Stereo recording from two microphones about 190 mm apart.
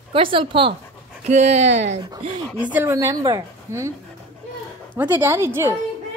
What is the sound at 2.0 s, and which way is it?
A woman's voice, 20° right (ahead or behind).